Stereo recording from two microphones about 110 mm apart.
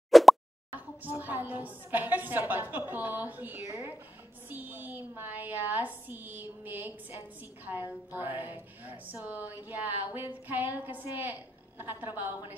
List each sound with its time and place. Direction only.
0.1 s plop: centre (ahead or behind)
0.7 s a woman's voice: 15° right (ahead or behind)